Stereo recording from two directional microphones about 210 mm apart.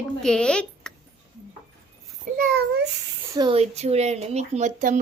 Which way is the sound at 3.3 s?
25° right (ahead or behind).